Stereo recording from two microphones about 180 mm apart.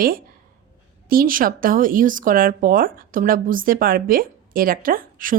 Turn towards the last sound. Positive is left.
turn(degrees=-50)  # may be behind; listen again after turning